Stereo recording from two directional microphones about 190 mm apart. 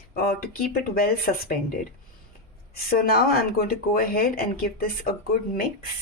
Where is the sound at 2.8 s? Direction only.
50° left (ahead or behind).